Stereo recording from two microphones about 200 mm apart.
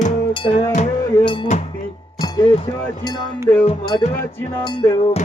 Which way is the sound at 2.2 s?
25° left (ahead or behind).